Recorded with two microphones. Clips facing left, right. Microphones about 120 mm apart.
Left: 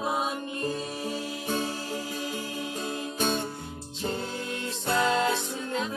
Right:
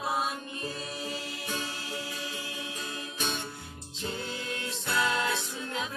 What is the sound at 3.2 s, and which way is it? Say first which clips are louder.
Music: left 7 dB; 40° left (ahead or behind).